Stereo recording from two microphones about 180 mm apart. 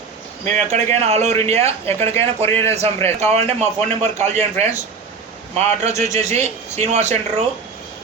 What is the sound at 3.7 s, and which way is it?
Speech, 40° right (ahead or behind).